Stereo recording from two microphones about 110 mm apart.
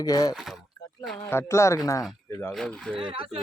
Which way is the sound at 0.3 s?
Centre (ahead or behind).